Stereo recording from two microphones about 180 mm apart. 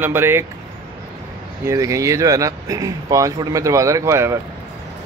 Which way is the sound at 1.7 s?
15° right (ahead or behind).